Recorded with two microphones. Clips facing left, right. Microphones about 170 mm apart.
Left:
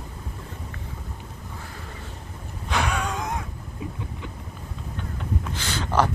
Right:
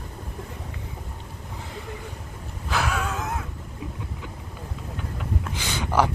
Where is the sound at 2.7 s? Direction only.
Centre (ahead or behind).